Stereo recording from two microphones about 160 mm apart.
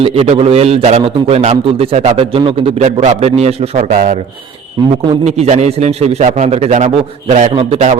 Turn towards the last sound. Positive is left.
turn(degrees=-40)  # may be behind; listen again after turning